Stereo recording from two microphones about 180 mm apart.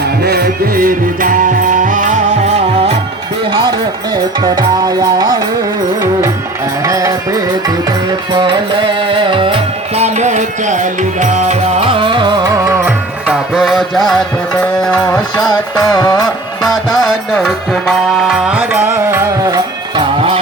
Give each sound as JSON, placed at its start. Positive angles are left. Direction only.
{"t": 0.2, "sound": "music", "side_deg": -60}
{"t": 4.1, "sound": "music", "side_deg": -20}
{"t": 6.8, "sound": "music", "side_deg": -20}
{"t": 15.8, "sound": "music", "side_deg": 25}
{"t": 16.6, "sound": "music", "side_deg": 0}